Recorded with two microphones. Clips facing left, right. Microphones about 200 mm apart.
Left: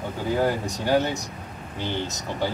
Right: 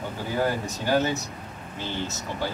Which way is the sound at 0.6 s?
15° left (ahead or behind).